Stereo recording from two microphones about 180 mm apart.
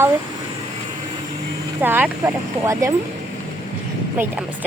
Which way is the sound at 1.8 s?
10° right (ahead or behind).